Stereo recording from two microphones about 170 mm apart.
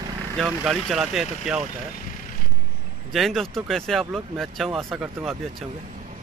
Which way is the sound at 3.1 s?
Centre (ahead or behind).